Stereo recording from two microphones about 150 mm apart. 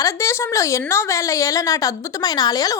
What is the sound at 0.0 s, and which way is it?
A woman's voice, 20° left (ahead or behind).